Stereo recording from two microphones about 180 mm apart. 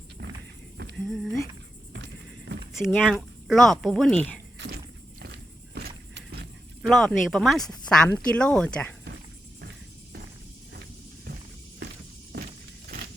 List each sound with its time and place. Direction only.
0.9 s a sound: centre (ahead or behind)
2.7 s speech: centre (ahead or behind)
4.5 s walk: 75° right (ahead or behind)
5.7 s vehicle: 65° right (ahead or behind)
6.8 s speech: centre (ahead or behind)